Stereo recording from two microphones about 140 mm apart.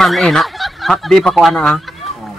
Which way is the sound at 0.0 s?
Centre (ahead or behind).